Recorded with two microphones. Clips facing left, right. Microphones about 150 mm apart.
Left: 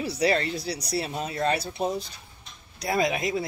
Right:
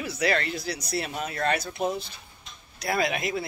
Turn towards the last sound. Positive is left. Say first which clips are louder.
# left 2 dB
turn(degrees=35)  # may be behind; listen again after turning